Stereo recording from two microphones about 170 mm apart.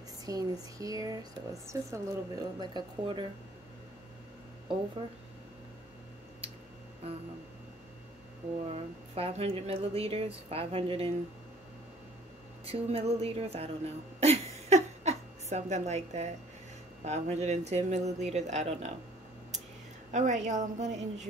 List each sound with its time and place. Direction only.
0.2 s a sound: 20° right (ahead or behind)
0.7 s speech: 20° right (ahead or behind)
8.6 s speech: 35° right (ahead or behind)
12.6 s a sound: 35° right (ahead or behind)
17.0 s speech: 40° right (ahead or behind)
20.1 s a woman's voice: 45° right (ahead or behind)